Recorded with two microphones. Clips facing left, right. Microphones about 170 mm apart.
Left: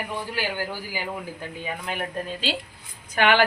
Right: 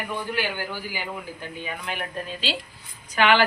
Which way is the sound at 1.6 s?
35° left (ahead or behind).